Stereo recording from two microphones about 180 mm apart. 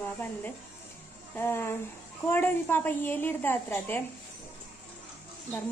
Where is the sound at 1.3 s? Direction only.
10° left (ahead or behind).